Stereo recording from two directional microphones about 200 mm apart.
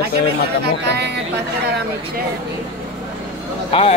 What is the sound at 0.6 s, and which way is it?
Speech, 55° right (ahead or behind).